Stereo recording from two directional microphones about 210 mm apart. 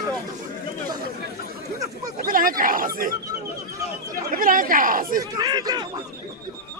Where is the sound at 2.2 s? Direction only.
40° right (ahead or behind).